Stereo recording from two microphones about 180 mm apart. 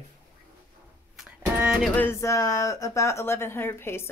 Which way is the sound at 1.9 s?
15° left (ahead or behind).